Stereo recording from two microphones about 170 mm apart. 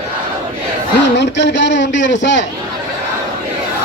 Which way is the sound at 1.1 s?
90° left.